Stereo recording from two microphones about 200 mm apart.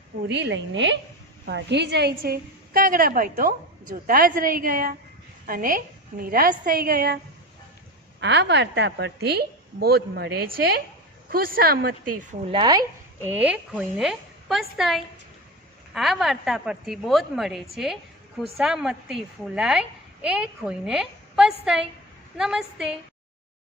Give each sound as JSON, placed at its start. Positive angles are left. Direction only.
{"t": 0.3, "sound": "a woman's voice", "side_deg": -60}
{"t": 8.2, "sound": "a woman's voice", "side_deg": -60}
{"t": 12.5, "sound": "speech", "side_deg": -20}
{"t": 13.2, "sound": "a woman's voice", "side_deg": -10}